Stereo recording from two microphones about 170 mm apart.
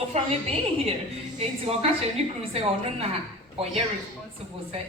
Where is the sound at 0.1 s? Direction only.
40° right (ahead or behind).